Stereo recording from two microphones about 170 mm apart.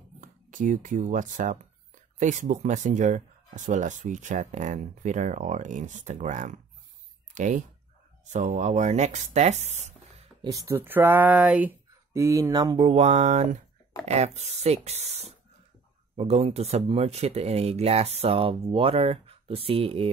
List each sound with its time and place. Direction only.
0.2 s speech: 50° right (ahead or behind)
10.4 s speech: 20° right (ahead or behind)